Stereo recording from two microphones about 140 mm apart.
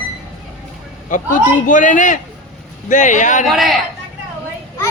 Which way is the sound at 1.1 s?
65° left (ahead or behind).